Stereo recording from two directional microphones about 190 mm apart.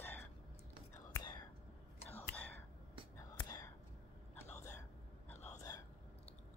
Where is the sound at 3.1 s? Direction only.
20° left (ahead or behind).